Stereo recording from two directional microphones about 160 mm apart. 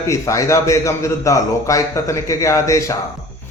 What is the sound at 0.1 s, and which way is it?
A man's voice, 20° left (ahead or behind).